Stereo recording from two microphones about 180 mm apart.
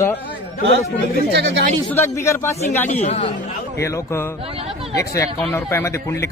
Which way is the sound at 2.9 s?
40° left (ahead or behind).